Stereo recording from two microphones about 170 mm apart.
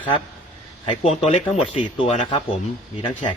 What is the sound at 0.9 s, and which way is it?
Speech, 35° left (ahead or behind).